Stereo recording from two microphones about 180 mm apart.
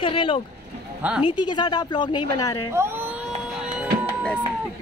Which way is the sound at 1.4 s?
25° left (ahead or behind).